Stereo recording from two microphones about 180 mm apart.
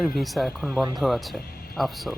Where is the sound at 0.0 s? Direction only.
Centre (ahead or behind).